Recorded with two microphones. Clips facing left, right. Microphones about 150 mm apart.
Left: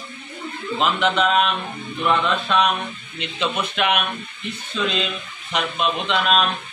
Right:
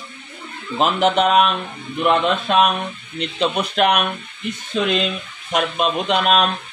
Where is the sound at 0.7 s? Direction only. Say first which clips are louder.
Right 4 dB; 45° right (ahead or behind).